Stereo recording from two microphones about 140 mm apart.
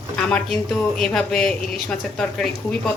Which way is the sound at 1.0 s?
5° left (ahead or behind).